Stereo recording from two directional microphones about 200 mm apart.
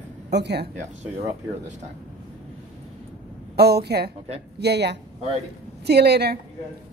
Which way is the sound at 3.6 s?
55° right (ahead or behind).